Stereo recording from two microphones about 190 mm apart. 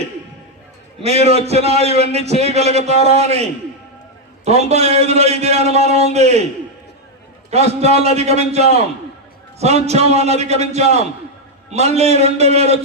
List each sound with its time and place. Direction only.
1.0 s a man's voice: 35° right (ahead or behind)
4.4 s a man's voice: 35° right (ahead or behind)
7.5 s a man's voice: 35° right (ahead or behind)